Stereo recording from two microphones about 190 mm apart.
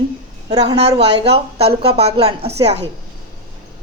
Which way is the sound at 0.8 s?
35° right (ahead or behind).